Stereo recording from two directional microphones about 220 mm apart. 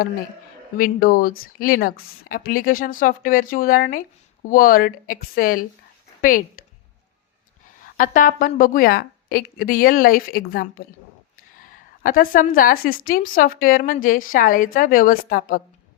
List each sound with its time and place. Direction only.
0.8 s a woman's voice: 40° left (ahead or behind)
6.6 s a sound: 40° left (ahead or behind)
7.9 s a woman's voice: 35° left (ahead or behind)
12.0 s a woman's voice: 40° left (ahead or behind)